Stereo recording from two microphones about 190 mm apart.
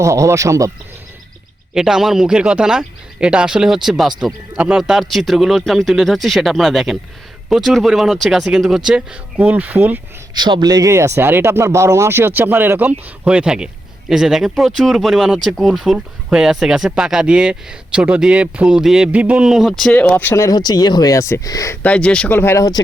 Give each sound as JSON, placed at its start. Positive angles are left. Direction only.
{"t": 0.0, "sound": "speech", "side_deg": -15}
{"t": 1.7, "sound": "speech", "side_deg": -5}
{"t": 10.3, "sound": "speech", "side_deg": -25}